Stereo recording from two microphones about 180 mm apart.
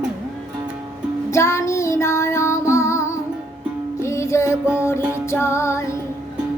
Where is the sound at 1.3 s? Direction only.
15° left (ahead or behind).